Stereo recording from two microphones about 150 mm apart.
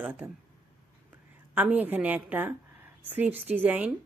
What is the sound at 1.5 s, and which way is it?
A woman's voice, 10° right (ahead or behind).